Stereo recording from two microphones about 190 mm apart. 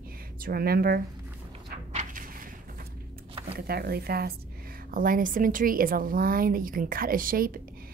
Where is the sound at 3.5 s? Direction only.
55° right (ahead or behind).